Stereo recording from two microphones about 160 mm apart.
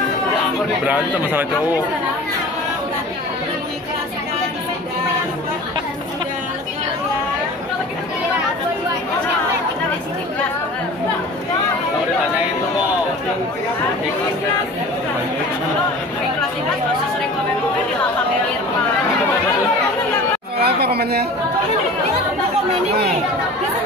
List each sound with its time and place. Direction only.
0.8 s speech: 10° right (ahead or behind)
20.6 s speech: 80° right